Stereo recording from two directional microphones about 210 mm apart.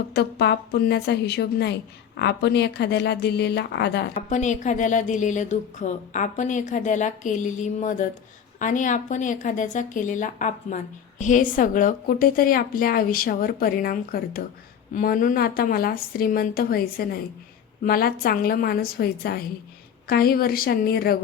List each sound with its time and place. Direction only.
0.1 s a woman's voice: 50° left (ahead or behind)
4.1 s a woman's voice: 35° left (ahead or behind)